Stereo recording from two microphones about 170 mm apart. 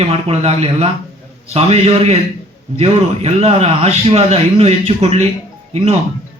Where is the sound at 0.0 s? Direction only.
35° right (ahead or behind).